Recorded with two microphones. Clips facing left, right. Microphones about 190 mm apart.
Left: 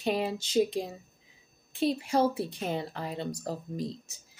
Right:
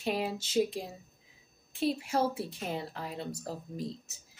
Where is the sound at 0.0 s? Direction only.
5° right (ahead or behind).